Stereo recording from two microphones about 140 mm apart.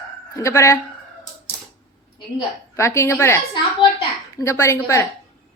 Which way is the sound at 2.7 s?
20° left (ahead or behind).